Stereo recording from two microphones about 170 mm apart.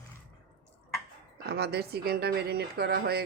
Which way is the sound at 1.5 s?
70° right (ahead or behind).